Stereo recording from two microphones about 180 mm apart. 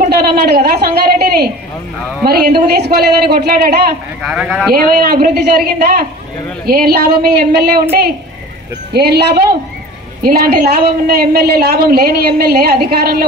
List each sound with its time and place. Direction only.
0.0 s a woman's voice: 60° right (ahead or behind)
4.2 s a man's voice: 5° right (ahead or behind)
5.0 s a woman's voice: 60° right (ahead or behind)
8.9 s a woman's voice: 65° right (ahead or behind)